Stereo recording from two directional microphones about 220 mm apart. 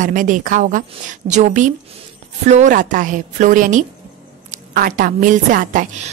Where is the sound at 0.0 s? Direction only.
35° right (ahead or behind).